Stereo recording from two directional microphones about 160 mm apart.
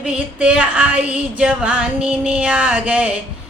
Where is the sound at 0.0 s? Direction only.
5° right (ahead or behind).